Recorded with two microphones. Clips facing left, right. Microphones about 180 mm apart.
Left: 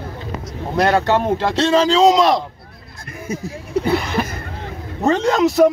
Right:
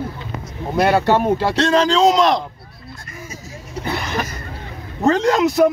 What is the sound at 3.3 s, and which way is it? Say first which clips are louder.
Speech: left 11 dB; 60° left (ahead or behind).